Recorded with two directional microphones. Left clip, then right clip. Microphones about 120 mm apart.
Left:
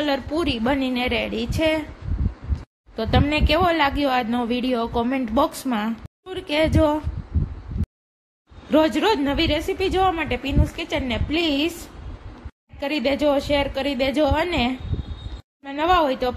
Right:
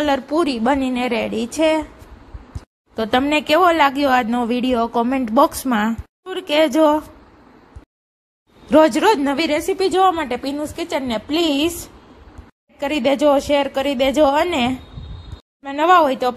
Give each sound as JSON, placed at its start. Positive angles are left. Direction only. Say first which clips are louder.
{"t": 0.0, "sound": "a woman's voice", "louder": "right 5 dB", "side_deg": -40}
{"t": 3.0, "sound": "a woman's voice", "louder": "right 4 dB", "side_deg": -40}
{"t": 8.6, "sound": "a woman's voice", "louder": "right 6 dB", "side_deg": -50}
{"t": 12.7, "sound": "a woman's voice", "louder": "right 4 dB", "side_deg": -50}